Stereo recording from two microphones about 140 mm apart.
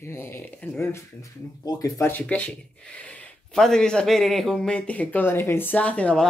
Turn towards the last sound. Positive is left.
turn(degrees=5)  # may be behind; listen again after turning